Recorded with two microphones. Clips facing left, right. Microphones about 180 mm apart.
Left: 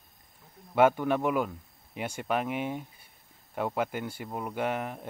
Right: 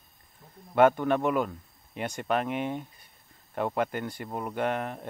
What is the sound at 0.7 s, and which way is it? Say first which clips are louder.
Speech: right 2 dB; 10° left (ahead or behind).